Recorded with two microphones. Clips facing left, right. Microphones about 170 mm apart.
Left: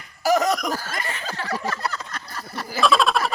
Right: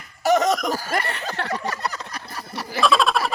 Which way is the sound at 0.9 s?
65° right (ahead or behind).